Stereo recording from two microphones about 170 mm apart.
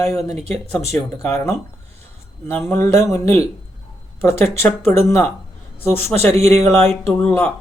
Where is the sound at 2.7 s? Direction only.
15° left (ahead or behind).